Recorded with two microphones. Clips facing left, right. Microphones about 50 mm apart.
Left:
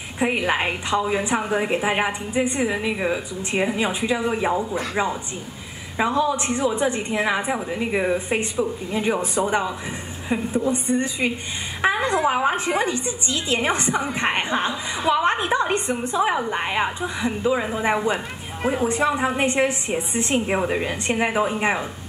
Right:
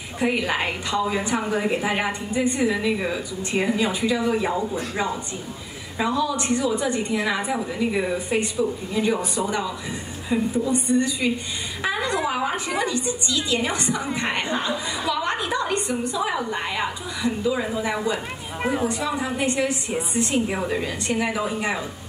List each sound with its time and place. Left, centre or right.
0.2 s a woman's voice: left
5.9 s a woman's voice: left